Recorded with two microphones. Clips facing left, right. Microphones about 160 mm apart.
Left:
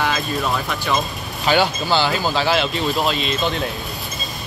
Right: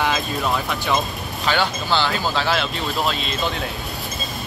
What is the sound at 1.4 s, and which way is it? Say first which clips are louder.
Speech: left 4 dB; 15° left (ahead or behind).